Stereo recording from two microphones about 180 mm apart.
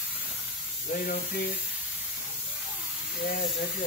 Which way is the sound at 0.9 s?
55° left (ahead or behind).